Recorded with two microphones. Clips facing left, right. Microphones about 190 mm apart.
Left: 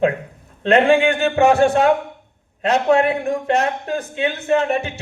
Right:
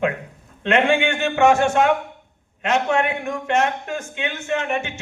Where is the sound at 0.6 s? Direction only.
35° left (ahead or behind).